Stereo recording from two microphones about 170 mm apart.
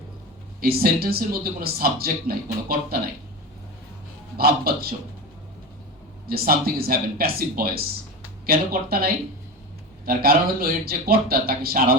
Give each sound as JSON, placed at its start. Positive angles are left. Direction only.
{"t": 0.6, "sound": "speech", "side_deg": -60}
{"t": 4.4, "sound": "speech", "side_deg": -60}
{"t": 6.2, "sound": "speech", "side_deg": -60}
{"t": 10.1, "sound": "speech", "side_deg": -60}